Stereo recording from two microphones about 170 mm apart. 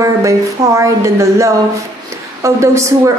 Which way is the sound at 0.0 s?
20° right (ahead or behind).